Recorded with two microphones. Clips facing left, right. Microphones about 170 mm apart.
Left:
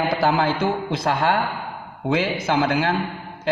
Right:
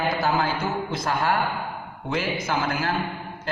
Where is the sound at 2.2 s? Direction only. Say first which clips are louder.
Left 4 dB; 70° left (ahead or behind).